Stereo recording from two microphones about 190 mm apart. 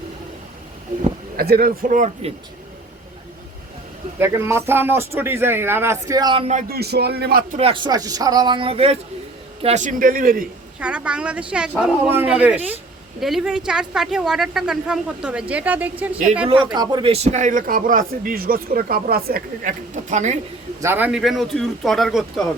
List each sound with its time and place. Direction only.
1.4 s speech: 50° right (ahead or behind)
4.2 s speech: 15° right (ahead or behind); by 6.6 s 30° right (ahead or behind)
6.6 s speech: 55° right (ahead or behind)
7.6 s speech: 25° right (ahead or behind); by 10.4 s 45° right (ahead or behind)
10.8 s speech: 5° right (ahead or behind)
16.7 s speech: 20° right (ahead or behind); by 20.4 s 40° right (ahead or behind)
20.8 s speech: 10° right (ahead or behind)